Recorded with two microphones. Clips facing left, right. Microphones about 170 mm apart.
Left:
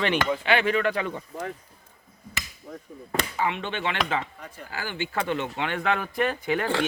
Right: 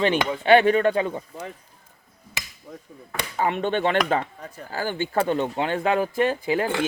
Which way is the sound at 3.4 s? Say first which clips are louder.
Right 8 dB; 45° right (ahead or behind).